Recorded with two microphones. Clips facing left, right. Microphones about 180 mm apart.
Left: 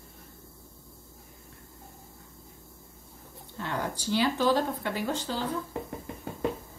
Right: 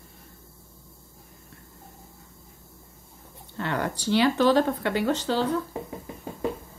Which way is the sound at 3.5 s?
75° right (ahead or behind).